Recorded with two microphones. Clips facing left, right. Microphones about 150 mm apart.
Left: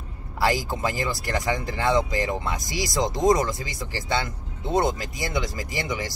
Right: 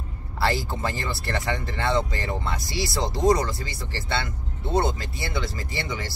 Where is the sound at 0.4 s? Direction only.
15° left (ahead or behind).